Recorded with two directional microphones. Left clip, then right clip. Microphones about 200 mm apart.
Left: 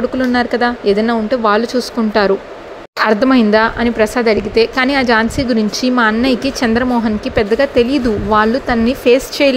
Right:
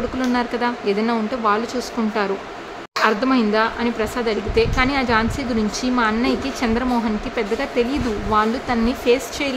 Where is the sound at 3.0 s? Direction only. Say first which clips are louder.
Left 6 dB; 35° left (ahead or behind).